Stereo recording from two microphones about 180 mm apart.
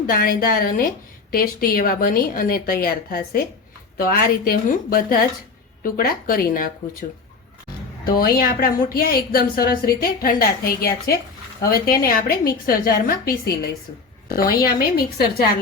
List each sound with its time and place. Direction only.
0.1 s a woman's voice: 55° left (ahead or behind)
8.1 s a woman's voice: 55° left (ahead or behind)